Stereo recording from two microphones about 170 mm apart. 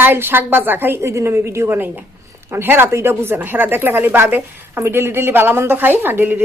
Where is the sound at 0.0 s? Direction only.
10° right (ahead or behind).